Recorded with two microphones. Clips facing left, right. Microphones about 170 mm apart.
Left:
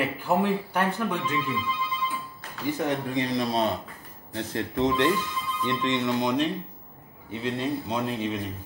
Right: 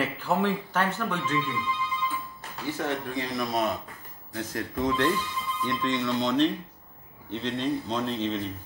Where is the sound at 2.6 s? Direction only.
20° left (ahead or behind).